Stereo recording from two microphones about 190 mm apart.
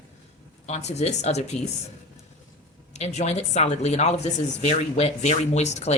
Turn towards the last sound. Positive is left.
turn(degrees=35)  # may be behind; listen again after turning